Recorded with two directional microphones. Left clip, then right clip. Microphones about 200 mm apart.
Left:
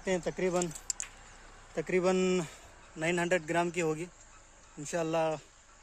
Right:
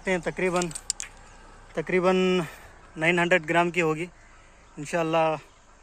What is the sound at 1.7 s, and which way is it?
Speech, 5° left (ahead or behind).